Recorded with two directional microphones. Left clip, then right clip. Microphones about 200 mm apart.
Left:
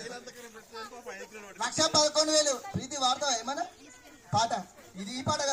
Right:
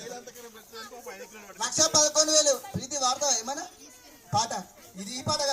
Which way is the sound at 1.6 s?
5° left (ahead or behind).